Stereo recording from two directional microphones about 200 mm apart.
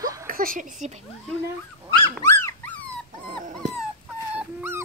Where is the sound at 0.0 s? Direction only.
15° right (ahead or behind).